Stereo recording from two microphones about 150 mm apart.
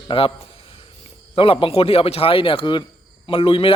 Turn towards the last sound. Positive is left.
turn(degrees=40)  # may be behind; listen again after turning